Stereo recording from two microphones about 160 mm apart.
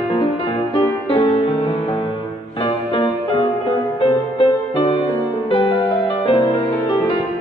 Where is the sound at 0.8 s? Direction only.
35° left (ahead or behind).